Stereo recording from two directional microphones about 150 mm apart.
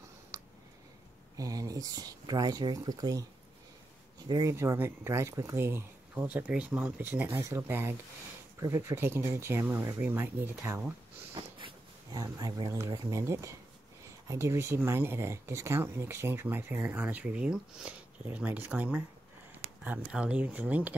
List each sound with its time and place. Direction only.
0.3 s a sound: 25° right (ahead or behind)
1.3 s speech: 25° right (ahead or behind)
4.3 s speech: 25° right (ahead or behind)
11.6 s speech: 25° right (ahead or behind); by 20.9 s 10° right (ahead or behind)